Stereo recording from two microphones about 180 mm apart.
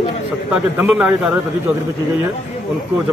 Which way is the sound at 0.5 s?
5° right (ahead or behind).